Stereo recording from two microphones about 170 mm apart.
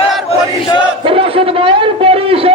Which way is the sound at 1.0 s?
30° right (ahead or behind).